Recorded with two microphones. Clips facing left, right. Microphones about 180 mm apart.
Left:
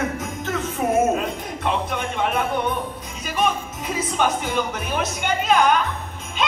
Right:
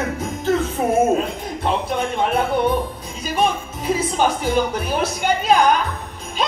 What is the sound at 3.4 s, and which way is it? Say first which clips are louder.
Speech: right 2 dB; 30° right (ahead or behind).